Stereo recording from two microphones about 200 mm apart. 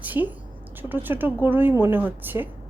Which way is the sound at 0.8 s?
10° right (ahead or behind).